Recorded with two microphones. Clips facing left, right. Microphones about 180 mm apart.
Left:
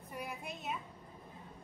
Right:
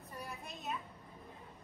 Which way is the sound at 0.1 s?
10° left (ahead or behind).